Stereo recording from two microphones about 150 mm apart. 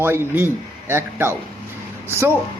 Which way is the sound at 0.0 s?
15° right (ahead or behind).